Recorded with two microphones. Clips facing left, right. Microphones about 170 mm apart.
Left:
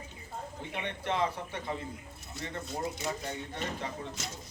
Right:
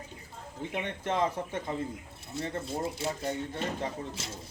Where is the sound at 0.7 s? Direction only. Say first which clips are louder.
Right 2 dB; 45° right (ahead or behind).